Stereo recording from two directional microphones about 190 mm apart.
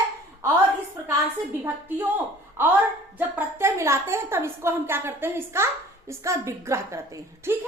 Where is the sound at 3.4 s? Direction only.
15° right (ahead or behind).